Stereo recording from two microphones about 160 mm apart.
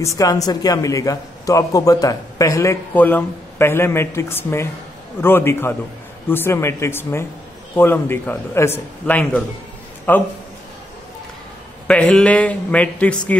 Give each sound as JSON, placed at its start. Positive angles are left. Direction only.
{"t": 0.0, "sound": "a man's voice", "side_deg": 20}
{"t": 11.9, "sound": "a man's voice", "side_deg": 5}